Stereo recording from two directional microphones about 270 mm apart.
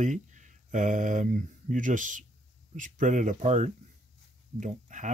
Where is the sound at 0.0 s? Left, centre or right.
Right.